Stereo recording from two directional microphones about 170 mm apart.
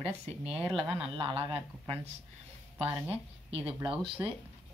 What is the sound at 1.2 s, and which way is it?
Speech, 30° right (ahead or behind).